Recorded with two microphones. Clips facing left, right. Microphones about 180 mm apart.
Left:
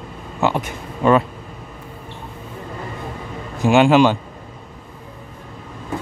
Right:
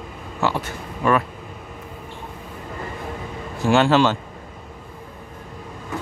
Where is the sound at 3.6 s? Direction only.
15° left (ahead or behind).